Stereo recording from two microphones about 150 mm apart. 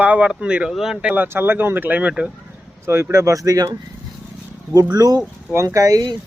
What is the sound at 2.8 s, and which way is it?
Speech, 15° right (ahead or behind).